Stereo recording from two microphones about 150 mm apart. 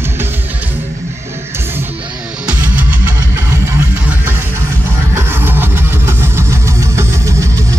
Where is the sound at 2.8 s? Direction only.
10° right (ahead or behind).